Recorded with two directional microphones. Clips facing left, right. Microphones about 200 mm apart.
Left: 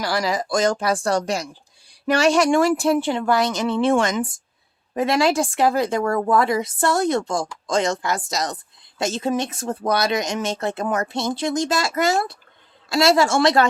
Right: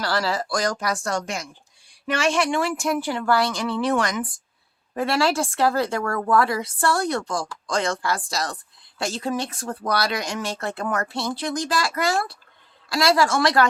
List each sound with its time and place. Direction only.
0.0 s speech: 15° left (ahead or behind)